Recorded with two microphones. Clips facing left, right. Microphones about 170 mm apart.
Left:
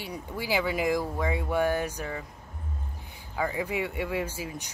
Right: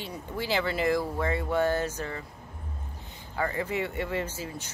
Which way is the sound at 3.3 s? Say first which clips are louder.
Even; 10° left (ahead or behind).